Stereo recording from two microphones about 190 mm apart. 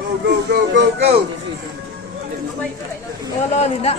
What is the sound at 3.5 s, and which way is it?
Speech, 35° left (ahead or behind).